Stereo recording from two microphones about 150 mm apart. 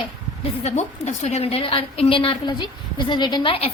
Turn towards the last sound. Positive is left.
turn(degrees=40)  # may be behind; listen again after turning